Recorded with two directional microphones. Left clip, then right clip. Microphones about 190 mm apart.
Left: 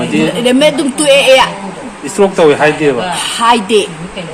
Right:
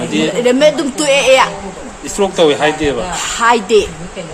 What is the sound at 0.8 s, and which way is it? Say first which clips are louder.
Speech: left 4 dB; 15° right (ahead or behind).